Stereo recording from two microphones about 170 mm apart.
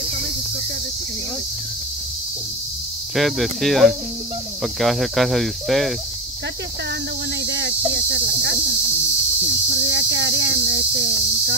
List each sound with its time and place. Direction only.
3.2 s speech: centre (ahead or behind)
7.4 s speech: 90° right
9.8 s speech: 90° right